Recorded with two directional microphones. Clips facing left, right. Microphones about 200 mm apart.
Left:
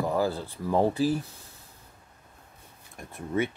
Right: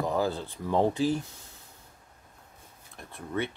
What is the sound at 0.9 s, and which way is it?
Speech, 35° left (ahead or behind).